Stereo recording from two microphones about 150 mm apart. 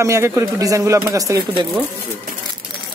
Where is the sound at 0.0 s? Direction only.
20° right (ahead or behind).